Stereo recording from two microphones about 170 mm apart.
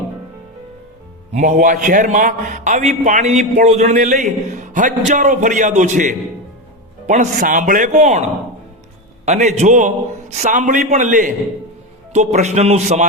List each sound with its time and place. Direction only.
1.3 s a man's voice: 45° right (ahead or behind)